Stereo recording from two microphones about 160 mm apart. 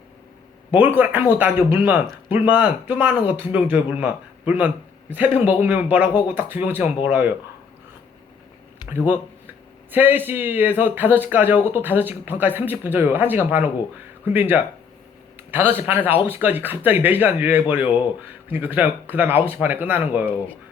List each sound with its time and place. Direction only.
0.9 s speech: 10° right (ahead or behind)
8.8 s a sound: 25° left (ahead or behind)
9.9 s a man's voice: 10° right (ahead or behind)